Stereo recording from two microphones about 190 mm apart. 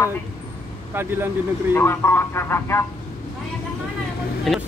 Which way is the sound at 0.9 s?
10° right (ahead or behind).